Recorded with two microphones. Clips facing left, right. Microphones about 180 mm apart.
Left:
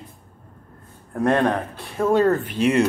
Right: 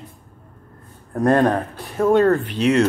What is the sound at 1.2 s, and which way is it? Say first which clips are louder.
Speech: right 3 dB; 5° right (ahead or behind).